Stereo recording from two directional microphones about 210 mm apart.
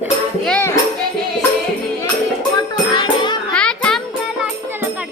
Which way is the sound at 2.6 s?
20° left (ahead or behind).